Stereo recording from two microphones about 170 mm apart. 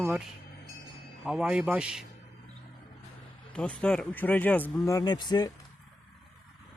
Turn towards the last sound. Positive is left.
turn(degrees=25)  # may be behind; listen again after turning